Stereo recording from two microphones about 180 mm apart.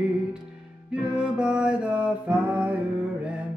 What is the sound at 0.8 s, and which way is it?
Music, 5° right (ahead or behind).